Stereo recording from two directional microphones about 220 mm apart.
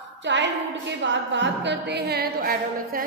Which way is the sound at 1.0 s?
55° right (ahead or behind).